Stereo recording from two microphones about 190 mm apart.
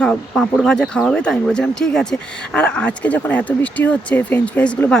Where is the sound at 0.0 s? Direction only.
5° left (ahead or behind).